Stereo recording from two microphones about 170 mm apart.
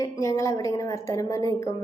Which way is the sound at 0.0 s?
20° left (ahead or behind).